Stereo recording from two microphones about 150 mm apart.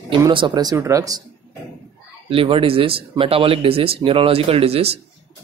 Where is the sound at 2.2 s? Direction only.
40° right (ahead or behind).